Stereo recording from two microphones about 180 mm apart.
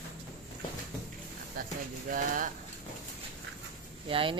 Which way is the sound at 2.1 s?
50° right (ahead or behind).